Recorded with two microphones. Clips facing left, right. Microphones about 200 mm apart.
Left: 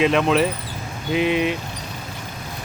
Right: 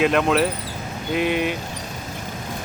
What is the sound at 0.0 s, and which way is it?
Speech, centre (ahead or behind).